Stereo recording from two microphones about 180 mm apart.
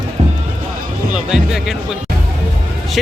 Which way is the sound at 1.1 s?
5° right (ahead or behind).